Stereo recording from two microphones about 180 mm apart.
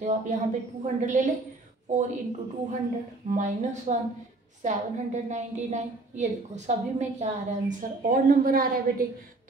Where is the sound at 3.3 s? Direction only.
45° right (ahead or behind).